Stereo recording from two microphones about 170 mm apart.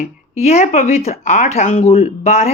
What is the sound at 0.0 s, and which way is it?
A woman's voice, 40° left (ahead or behind).